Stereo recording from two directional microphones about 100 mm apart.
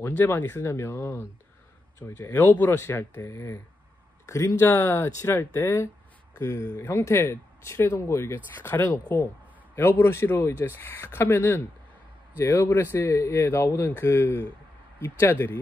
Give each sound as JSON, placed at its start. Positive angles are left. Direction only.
{"t": 0.0, "sound": "speech", "side_deg": 20}
{"t": 2.3, "sound": "speech", "side_deg": 20}